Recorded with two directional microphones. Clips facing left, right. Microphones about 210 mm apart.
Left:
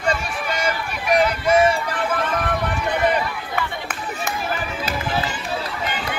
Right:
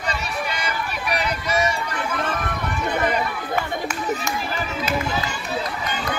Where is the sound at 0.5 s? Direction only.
50° left (ahead or behind).